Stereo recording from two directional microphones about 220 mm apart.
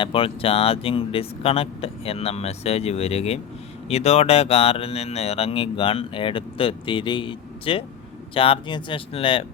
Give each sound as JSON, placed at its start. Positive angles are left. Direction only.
{"t": 0.0, "sound": "speech", "side_deg": 25}